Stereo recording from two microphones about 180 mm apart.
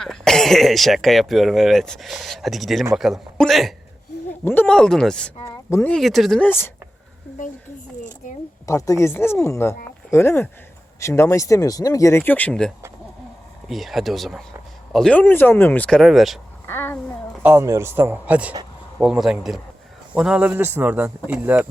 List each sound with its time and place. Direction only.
0.0 s speech: centre (ahead or behind)
5.5 s a sound: 15° left (ahead or behind)
5.9 s speech: centre (ahead or behind)
8.6 s speech: 15° left (ahead or behind); by 16.4 s centre (ahead or behind)
16.6 s speech: 10° left (ahead or behind)
17.4 s a man's voice: 15° right (ahead or behind)